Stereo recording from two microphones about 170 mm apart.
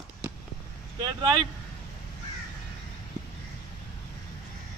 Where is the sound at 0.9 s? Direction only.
25° right (ahead or behind).